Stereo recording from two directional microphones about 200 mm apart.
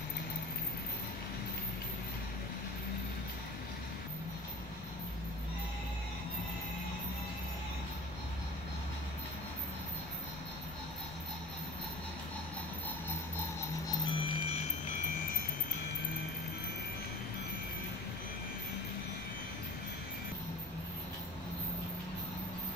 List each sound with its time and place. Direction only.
13.8 s music: 25° left (ahead or behind)